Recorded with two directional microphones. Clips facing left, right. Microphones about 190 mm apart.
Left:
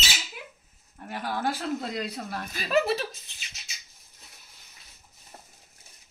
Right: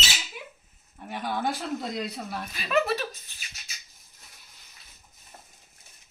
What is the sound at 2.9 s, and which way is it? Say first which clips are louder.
Speech: left 1 dB; 25° left (ahead or behind).